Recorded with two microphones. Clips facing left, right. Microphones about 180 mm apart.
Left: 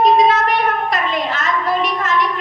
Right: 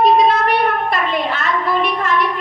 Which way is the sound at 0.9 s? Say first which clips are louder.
Right 1 dB; 45° left (ahead or behind).